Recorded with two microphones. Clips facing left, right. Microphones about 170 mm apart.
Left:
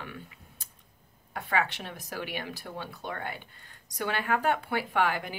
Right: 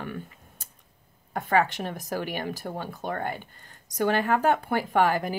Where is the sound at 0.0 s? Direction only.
45° right (ahead or behind).